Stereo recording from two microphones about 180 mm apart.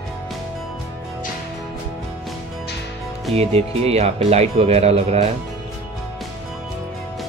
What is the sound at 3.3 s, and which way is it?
Speech, 35° right (ahead or behind).